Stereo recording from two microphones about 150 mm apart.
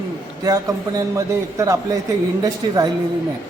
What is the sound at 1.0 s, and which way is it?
A man's voice, 20° right (ahead or behind).